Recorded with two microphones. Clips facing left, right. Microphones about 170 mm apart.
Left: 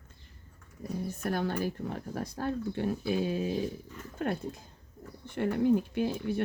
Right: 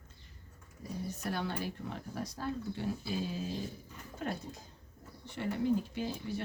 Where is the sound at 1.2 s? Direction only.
50° left (ahead or behind).